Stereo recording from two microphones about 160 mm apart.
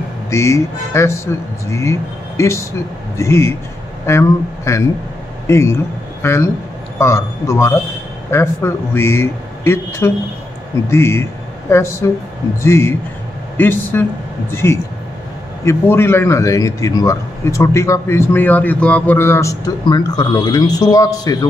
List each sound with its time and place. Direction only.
0.3 s a man's voice: 15° left (ahead or behind)